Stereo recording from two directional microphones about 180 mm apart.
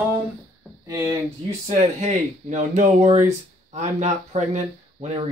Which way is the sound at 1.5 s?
40° right (ahead or behind).